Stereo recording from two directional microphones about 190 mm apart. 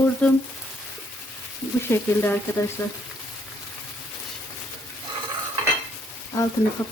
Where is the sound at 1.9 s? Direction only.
10° left (ahead or behind).